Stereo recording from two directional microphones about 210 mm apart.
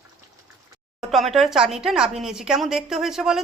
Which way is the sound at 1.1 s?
Centre (ahead or behind).